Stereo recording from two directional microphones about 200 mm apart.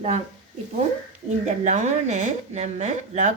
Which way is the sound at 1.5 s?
35° right (ahead or behind).